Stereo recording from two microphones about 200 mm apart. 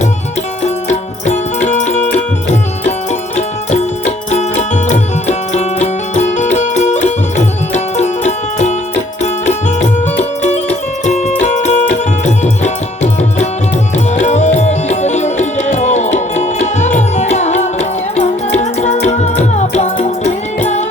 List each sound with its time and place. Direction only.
0.6 s music: 35° left (ahead or behind)
11.0 s music: 35° left (ahead or behind)